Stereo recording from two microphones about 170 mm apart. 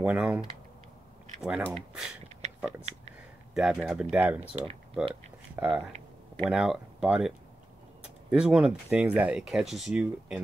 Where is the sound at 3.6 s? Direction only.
5° right (ahead or behind).